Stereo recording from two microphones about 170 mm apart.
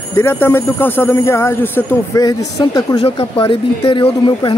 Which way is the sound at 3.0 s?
30° left (ahead or behind).